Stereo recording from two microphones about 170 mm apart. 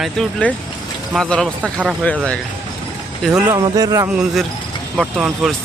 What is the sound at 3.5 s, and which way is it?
Speech, 20° right (ahead or behind).